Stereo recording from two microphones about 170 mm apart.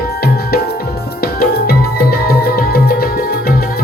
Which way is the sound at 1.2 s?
60° left (ahead or behind).